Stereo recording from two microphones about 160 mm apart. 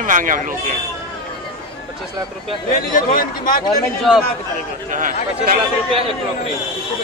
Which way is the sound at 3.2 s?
65° left (ahead or behind).